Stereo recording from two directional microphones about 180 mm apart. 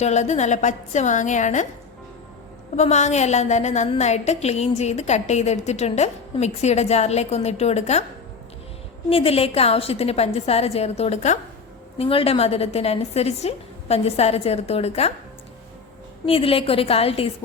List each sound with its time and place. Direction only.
0.0 s a woman's voice: 40° left (ahead or behind)
2.7 s a woman's voice: 40° left (ahead or behind)
9.0 s a woman's voice: 30° left (ahead or behind)
16.2 s a woman's voice: 30° left (ahead or behind)